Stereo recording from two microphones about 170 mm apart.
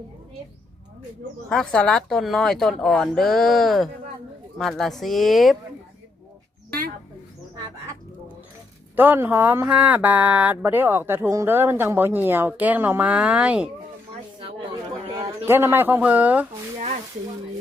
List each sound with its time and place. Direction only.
1.5 s speech: 5° left (ahead or behind)
9.0 s speech: 10° right (ahead or behind)
15.0 s a sound: 35° right (ahead or behind)
15.4 s speech: 15° right (ahead or behind)